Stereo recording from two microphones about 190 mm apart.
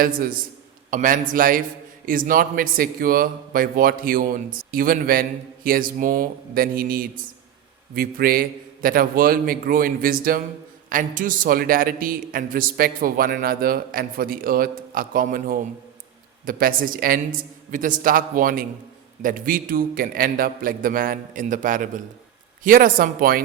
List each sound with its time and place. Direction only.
0.0 s a man's voice: 50° right (ahead or behind)